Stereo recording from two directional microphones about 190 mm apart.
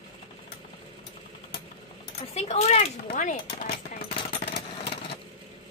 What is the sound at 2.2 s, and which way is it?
Speech, 35° left (ahead or behind).